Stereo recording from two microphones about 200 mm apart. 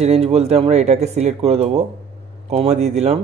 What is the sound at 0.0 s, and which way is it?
Speech, 30° right (ahead or behind).